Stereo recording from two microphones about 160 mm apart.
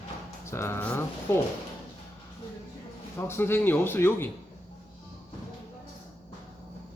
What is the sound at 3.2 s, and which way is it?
Speech, 15° left (ahead or behind).